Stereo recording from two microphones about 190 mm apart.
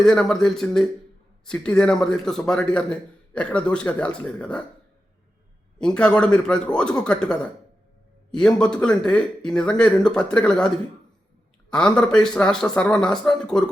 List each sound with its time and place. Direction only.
0.0 s a man's voice: 5° left (ahead or behind)
5.8 s a man's voice: 5° left (ahead or behind)
11.7 s a man's voice: 5° left (ahead or behind)